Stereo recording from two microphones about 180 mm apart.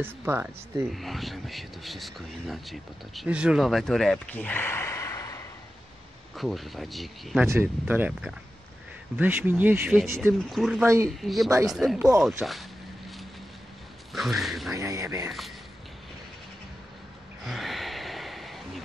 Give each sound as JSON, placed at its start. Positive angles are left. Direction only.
{"t": 0.0, "sound": "speech", "side_deg": -15}
{"t": 0.8, "sound": "speech", "side_deg": 0}
{"t": 6.3, "sound": "speech", "side_deg": 0}
{"t": 7.4, "sound": "speech", "side_deg": -10}
{"t": 10.5, "sound": "speech", "side_deg": 0}
{"t": 14.1, "sound": "speech", "side_deg": 0}
{"t": 14.7, "sound": "speech", "side_deg": -20}
{"t": 15.2, "sound": "speech", "side_deg": 0}
{"t": 17.5, "sound": "gasp", "side_deg": 0}